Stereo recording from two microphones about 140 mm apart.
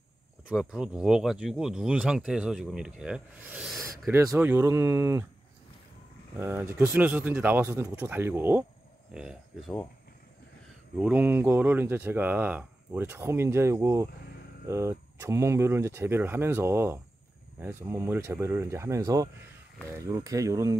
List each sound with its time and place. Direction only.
0.5 s speech: 5° right (ahead or behind)
4.4 s speech: 15° right (ahead or behind)
6.3 s speech: 15° right (ahead or behind)
11.0 s speech: 10° right (ahead or behind)